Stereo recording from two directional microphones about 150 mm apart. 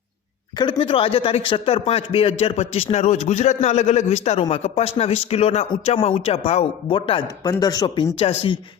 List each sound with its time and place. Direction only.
0.5 s a man's voice: 30° left (ahead or behind)
8.2 s a man's voice: 40° left (ahead or behind)